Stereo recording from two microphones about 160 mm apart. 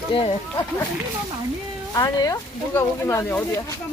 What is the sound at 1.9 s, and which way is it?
Music, 20° left (ahead or behind).